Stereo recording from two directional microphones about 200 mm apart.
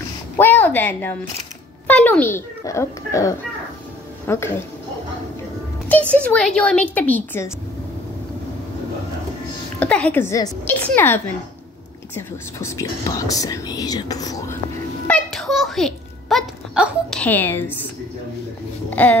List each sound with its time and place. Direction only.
0.4 s a woman's voice: 10° left (ahead or behind)
5.9 s speech: 5° left (ahead or behind)
9.8 s speech: 5° left (ahead or behind)
15.0 s a sound: 5° left (ahead or behind)
17.2 s speech: 10° left (ahead or behind)
18.9 s a sound: 10° left (ahead or behind)